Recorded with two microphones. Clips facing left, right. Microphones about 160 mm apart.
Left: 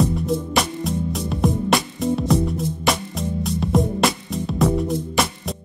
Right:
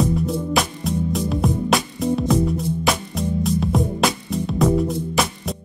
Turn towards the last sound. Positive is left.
turn(degrees=0)  # may be behind; listen again after turning